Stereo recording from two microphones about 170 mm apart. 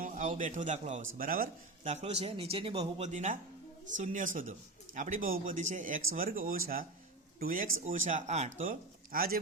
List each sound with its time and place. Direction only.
0.0 s a man's voice: 50° right (ahead or behind)
9.1 s speech: 60° right (ahead or behind)